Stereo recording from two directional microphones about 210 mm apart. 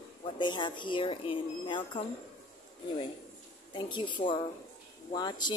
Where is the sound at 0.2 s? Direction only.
20° left (ahead or behind).